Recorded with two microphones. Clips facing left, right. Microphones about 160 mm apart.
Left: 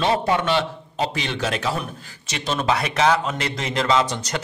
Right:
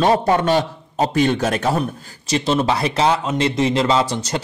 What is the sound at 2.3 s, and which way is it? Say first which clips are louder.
A man's voice: right 5 dB; 25° right (ahead or behind).